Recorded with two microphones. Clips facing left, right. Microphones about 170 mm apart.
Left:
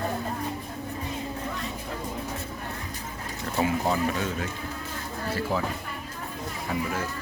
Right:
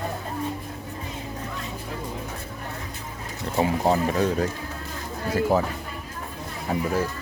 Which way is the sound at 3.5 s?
30° right (ahead or behind).